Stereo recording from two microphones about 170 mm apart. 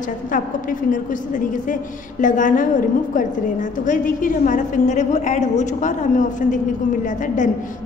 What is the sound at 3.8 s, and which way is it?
A woman's voice, 50° left (ahead or behind).